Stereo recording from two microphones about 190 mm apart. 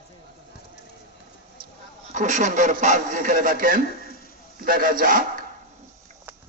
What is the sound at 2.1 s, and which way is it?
A man's voice, 40° right (ahead or behind).